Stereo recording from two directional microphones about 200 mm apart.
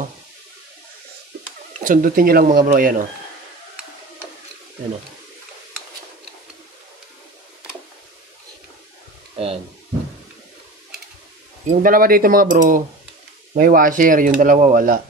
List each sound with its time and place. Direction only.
1.8 s speech: 45° right (ahead or behind)
9.4 s speech: 30° right (ahead or behind)
11.8 s speech: 45° right (ahead or behind)